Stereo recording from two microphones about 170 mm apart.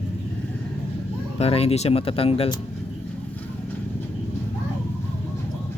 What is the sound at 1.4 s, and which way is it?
Speech, 35° left (ahead or behind).